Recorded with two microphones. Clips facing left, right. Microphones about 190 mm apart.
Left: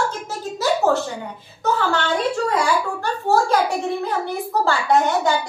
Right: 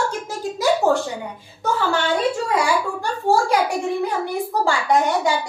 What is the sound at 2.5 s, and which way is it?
A child's voice, 10° right (ahead or behind).